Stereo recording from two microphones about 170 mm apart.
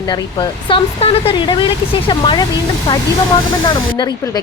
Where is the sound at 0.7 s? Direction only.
35° left (ahead or behind).